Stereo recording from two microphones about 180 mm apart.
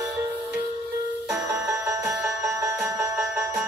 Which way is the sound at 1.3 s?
15° right (ahead or behind).